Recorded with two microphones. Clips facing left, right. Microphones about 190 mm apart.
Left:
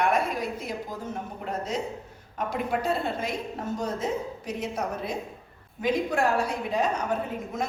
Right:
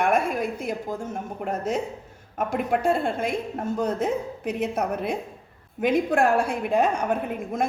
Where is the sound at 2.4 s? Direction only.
50° right (ahead or behind).